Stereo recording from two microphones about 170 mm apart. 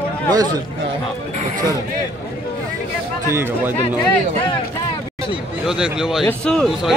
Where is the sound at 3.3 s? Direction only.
15° right (ahead or behind).